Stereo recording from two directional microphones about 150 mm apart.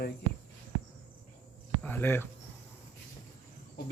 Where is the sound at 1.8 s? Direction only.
15° left (ahead or behind).